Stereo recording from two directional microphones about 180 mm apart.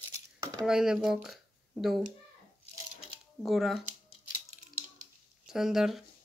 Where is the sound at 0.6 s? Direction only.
5° right (ahead or behind).